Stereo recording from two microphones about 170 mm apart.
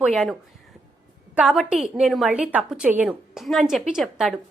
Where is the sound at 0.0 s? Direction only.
Centre (ahead or behind).